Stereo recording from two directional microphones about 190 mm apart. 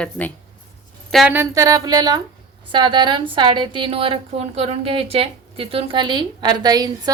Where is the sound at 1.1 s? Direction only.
5° right (ahead or behind).